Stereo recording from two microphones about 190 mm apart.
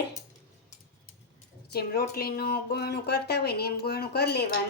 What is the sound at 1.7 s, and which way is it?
Speech, 55° left (ahead or behind).